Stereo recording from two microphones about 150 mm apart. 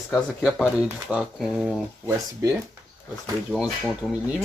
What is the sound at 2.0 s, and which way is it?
Speech, 20° right (ahead or behind).